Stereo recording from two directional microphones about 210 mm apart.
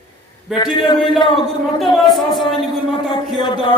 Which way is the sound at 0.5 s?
20° left (ahead or behind).